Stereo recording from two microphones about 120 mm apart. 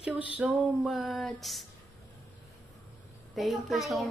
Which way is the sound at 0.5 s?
Centre (ahead or behind).